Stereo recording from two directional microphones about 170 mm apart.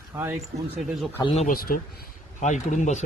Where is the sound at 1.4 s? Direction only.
55° left (ahead or behind).